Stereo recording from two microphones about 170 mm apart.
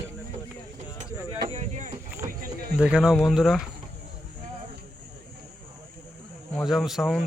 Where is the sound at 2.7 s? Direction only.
5° right (ahead or behind).